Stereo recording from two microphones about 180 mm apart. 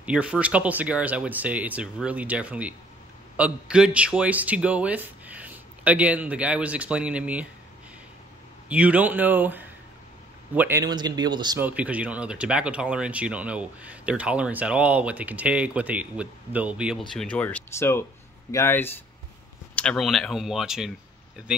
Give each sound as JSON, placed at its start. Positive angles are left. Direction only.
{"t": 0.0, "sound": "speech", "side_deg": -5}
{"t": 8.6, "sound": "speech", "side_deg": -10}
{"t": 10.8, "sound": "speech", "side_deg": -25}
{"t": 11.6, "sound": "speech", "side_deg": -10}